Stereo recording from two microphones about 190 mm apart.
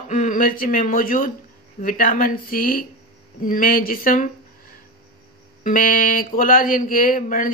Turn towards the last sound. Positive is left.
turn(degrees=45)  # may be behind; listen again after turning